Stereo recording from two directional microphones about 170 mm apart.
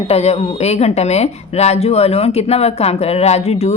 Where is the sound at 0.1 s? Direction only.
40° left (ahead or behind).